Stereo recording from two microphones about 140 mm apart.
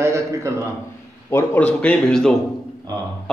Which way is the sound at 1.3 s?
10° left (ahead or behind).